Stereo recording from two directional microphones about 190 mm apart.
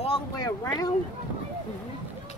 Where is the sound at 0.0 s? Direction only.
30° left (ahead or behind).